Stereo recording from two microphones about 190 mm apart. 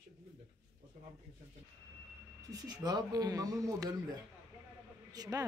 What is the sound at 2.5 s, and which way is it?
Speech, 20° right (ahead or behind).